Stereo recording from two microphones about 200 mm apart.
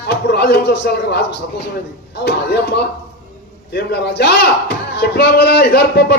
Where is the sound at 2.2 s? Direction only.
55° left (ahead or behind).